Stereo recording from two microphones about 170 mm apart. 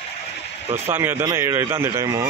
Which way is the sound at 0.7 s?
10° right (ahead or behind).